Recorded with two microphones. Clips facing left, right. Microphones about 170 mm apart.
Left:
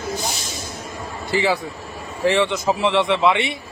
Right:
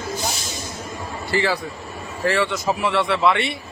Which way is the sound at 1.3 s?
15° left (ahead or behind).